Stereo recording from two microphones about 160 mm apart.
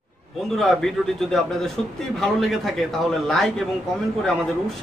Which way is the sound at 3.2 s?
Centre (ahead or behind).